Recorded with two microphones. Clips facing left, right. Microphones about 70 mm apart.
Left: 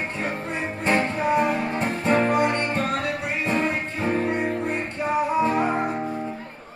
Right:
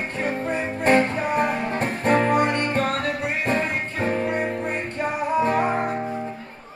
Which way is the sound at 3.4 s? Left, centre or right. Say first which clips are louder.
Left 2 dB; right.